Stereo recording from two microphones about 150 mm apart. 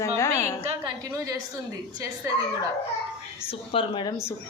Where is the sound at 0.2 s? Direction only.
15° left (ahead or behind).